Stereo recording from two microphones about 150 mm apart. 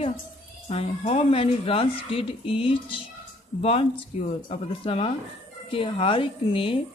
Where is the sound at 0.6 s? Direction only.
45° left (ahead or behind).